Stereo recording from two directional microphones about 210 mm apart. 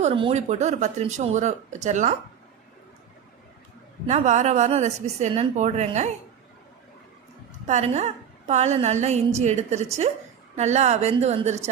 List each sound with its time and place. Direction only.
0.0 s speech: 25° right (ahead or behind)
4.0 s speech: 35° right (ahead or behind)
7.7 s speech: 30° right (ahead or behind)